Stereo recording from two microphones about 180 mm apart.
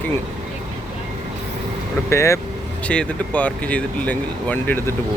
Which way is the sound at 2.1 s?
15° left (ahead or behind).